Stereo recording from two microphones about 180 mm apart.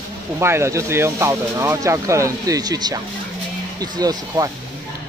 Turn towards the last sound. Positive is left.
turn(degrees=-20)  # may be behind; listen again after turning